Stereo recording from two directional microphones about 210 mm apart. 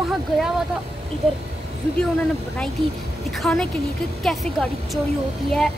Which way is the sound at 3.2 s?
Centre (ahead or behind).